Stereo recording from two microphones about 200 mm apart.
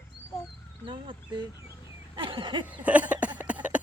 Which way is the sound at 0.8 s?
25° right (ahead or behind).